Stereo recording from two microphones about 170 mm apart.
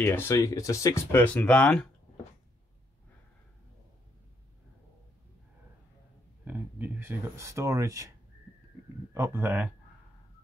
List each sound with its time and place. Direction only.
0.0 s speech: 15° left (ahead or behind)
6.4 s speech: 10° right (ahead or behind)
9.1 s speech: 15° right (ahead or behind)